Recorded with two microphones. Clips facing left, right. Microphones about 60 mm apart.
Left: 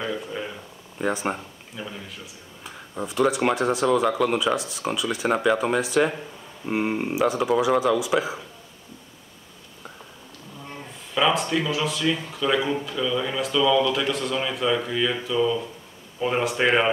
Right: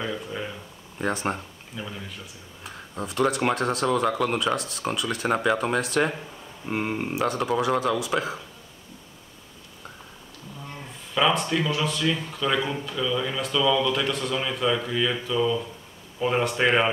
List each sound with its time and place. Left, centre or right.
0.0 s a man's voice: centre
11.1 s speech: centre